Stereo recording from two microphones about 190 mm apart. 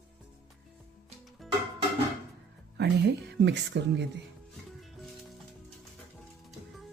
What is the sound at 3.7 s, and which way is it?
Speech, 65° right (ahead or behind).